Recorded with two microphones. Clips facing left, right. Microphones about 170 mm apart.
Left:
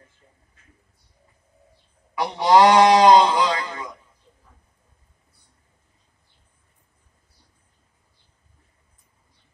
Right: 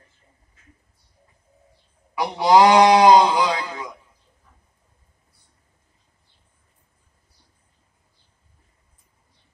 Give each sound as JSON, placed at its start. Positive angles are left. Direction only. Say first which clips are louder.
{"t": 2.1, "sound": "speech", "louder": "right 1 dB", "side_deg": -10}